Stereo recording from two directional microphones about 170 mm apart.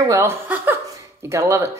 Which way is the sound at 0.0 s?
15° right (ahead or behind).